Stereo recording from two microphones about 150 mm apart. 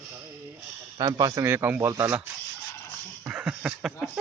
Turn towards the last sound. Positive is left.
turn(degrees=-5)  # may be behind; listen again after turning